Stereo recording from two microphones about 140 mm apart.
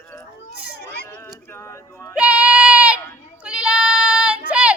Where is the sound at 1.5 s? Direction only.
20° left (ahead or behind).